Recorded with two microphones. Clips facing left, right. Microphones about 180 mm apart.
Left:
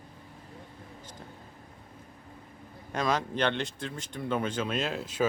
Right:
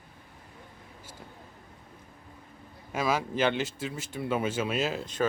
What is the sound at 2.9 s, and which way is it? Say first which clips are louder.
Speech: right 1 dB; 5° right (ahead or behind).